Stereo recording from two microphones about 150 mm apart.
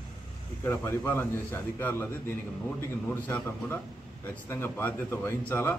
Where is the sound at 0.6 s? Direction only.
15° left (ahead or behind).